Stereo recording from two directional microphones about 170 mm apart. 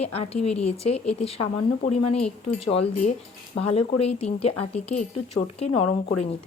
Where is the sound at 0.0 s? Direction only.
35° left (ahead or behind).